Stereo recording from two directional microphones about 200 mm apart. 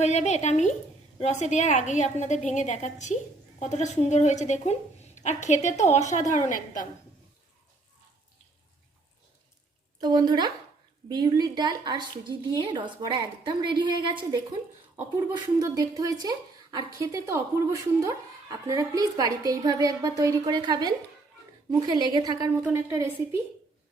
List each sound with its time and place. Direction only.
0.0 s a woman's voice: 35° left (ahead or behind)
10.0 s a woman's voice: 20° right (ahead or behind)